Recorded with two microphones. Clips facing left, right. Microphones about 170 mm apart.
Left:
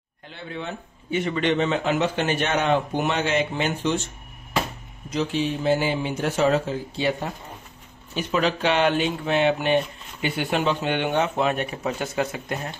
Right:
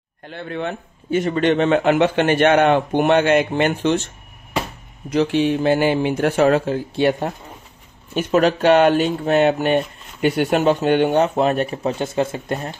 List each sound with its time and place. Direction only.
0.3 s a man's voice: 60° right (ahead or behind)
1.1 s a man's voice: 45° right (ahead or behind); by 4.1 s 60° right (ahead or behind)
5.1 s a man's voice: 65° right (ahead or behind); by 12.5 s 30° right (ahead or behind)